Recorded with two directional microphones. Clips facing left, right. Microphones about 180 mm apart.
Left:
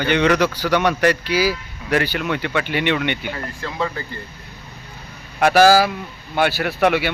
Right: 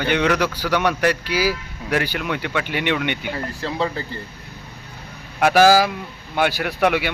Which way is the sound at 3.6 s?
30° right (ahead or behind).